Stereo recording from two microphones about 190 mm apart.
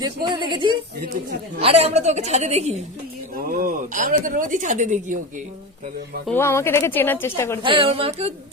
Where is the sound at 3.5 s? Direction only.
45° right (ahead or behind).